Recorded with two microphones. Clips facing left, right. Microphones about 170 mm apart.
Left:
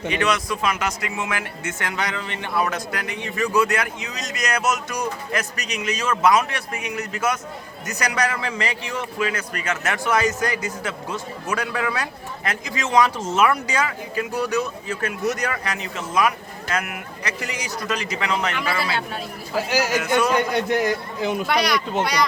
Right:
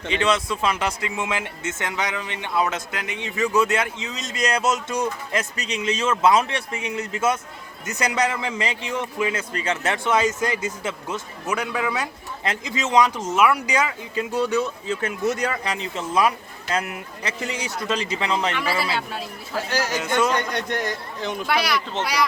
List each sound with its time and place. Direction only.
0.1 s speech: 25° right (ahead or behind)
18.8 s a man's voice: centre (ahead or behind)
19.5 s a man's voice: 10° left (ahead or behind); by 22.3 s 5° right (ahead or behind)